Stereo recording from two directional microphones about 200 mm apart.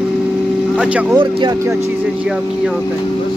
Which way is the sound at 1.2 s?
20° right (ahead or behind).